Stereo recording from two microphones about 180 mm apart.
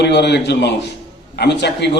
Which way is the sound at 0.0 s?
70° left (ahead or behind).